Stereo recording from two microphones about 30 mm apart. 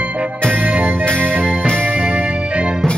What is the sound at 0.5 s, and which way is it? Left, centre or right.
Organ, right.